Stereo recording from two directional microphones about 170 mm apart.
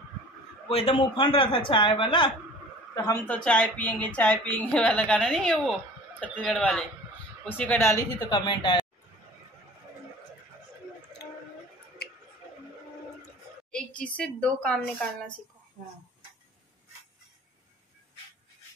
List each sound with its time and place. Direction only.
0.7 s a man's voice: 35° left (ahead or behind)
2.9 s a woman's voice: 15° left (ahead or behind)
3.3 s speech: 5° left (ahead or behind)
8.3 s a man's voice: 25° left (ahead or behind)
13.7 s a woman's voice: 5° left (ahead or behind)